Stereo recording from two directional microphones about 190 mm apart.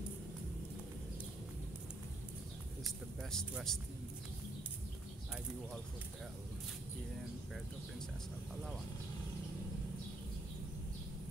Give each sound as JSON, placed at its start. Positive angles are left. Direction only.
{"t": 2.8, "sound": "speech", "side_deg": 0}